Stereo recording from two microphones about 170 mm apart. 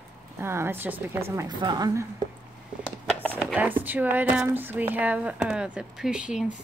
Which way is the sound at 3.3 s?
10° right (ahead or behind).